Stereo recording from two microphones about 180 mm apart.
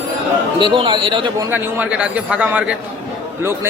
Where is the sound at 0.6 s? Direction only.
25° right (ahead or behind).